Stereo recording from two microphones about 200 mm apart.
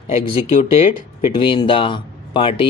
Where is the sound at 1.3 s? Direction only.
25° left (ahead or behind).